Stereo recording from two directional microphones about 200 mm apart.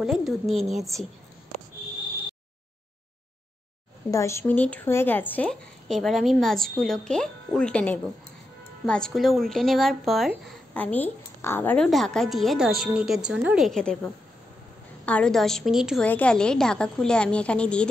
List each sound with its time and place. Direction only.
0.0 s speech: centre (ahead or behind)
4.1 s speech: 15° left (ahead or behind)